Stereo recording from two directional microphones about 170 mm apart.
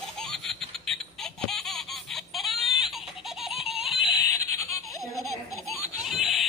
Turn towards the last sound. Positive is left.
turn(degrees=0)  # may be behind; listen again after turning